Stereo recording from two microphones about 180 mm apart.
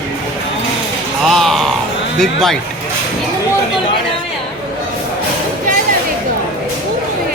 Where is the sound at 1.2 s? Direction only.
Centre (ahead or behind).